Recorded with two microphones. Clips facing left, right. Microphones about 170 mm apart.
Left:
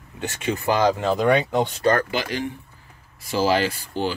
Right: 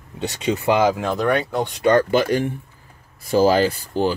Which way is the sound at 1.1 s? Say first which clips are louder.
Left 1 dB; 10° left (ahead or behind).